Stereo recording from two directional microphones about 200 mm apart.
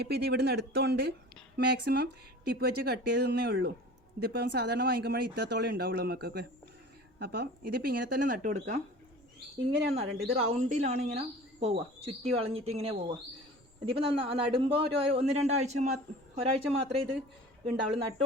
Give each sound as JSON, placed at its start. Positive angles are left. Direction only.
{"t": 0.0, "sound": "speech", "side_deg": -55}
{"t": 9.9, "sound": "a man's voice", "side_deg": -30}